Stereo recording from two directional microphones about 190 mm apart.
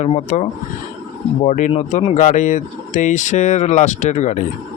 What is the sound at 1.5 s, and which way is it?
Speech, 40° left (ahead or behind).